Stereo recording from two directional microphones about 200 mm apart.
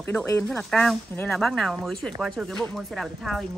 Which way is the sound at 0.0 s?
10° left (ahead or behind).